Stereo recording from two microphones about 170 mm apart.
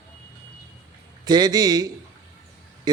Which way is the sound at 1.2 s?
25° right (ahead or behind).